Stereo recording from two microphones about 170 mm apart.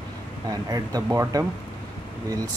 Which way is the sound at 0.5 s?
20° right (ahead or behind).